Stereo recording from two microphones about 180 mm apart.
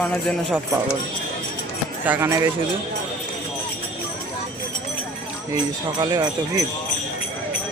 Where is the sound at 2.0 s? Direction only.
10° right (ahead or behind).